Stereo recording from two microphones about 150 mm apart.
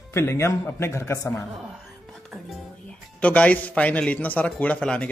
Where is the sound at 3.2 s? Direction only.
10° left (ahead or behind).